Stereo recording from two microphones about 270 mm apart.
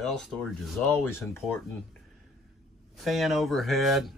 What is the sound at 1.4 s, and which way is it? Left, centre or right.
Speech, centre.